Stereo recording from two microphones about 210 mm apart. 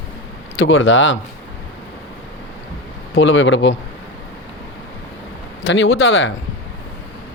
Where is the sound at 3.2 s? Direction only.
65° left (ahead or behind).